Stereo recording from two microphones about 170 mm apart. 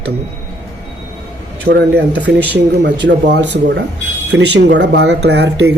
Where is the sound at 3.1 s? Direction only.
75° right (ahead or behind).